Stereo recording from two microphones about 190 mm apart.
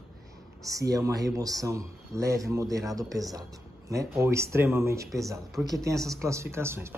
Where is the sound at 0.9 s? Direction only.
20° right (ahead or behind).